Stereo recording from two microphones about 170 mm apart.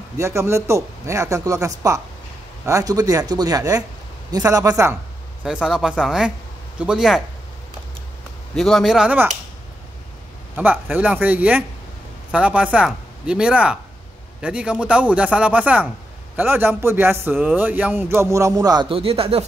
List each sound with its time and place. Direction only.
0.2 s a man's voice: 15° right (ahead or behind)
5.4 s speech: 5° right (ahead or behind)
8.5 s speech: centre (ahead or behind)
10.5 s a man's voice: 10° right (ahead or behind); by 19.4 s 35° right (ahead or behind)